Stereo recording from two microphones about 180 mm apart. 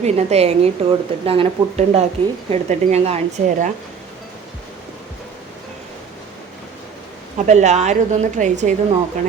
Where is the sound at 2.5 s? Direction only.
35° right (ahead or behind).